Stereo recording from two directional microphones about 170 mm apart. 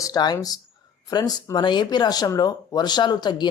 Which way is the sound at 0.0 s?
25° left (ahead or behind).